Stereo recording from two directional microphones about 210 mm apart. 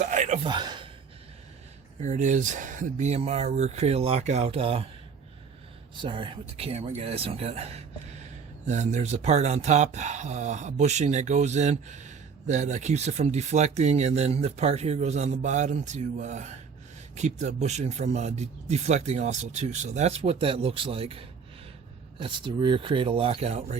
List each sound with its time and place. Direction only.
0.0 s a sound: 35° right (ahead or behind)
2.0 s speech: 35° right (ahead or behind)
6.0 s speech: 25° right (ahead or behind)